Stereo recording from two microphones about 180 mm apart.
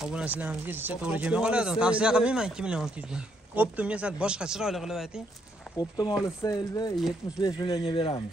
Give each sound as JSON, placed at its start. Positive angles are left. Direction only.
{"t": 0.0, "sound": "speech", "side_deg": -5}
{"t": 5.8, "sound": "speech", "side_deg": 25}